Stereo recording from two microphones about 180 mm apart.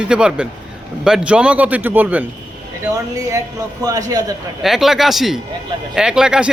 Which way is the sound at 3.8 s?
20° right (ahead or behind).